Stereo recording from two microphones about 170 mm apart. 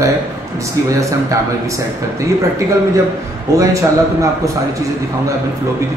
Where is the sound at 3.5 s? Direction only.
20° right (ahead or behind).